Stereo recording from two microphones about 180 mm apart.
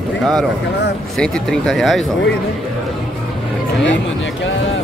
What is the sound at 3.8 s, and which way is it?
Speech, 90° left.